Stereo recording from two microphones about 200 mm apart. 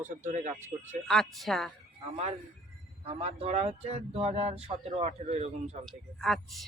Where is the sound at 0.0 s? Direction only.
40° right (ahead or behind).